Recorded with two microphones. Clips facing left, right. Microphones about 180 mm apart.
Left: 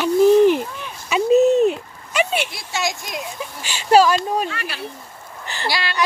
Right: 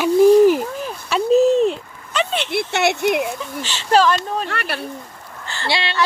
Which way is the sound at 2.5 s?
65° right (ahead or behind).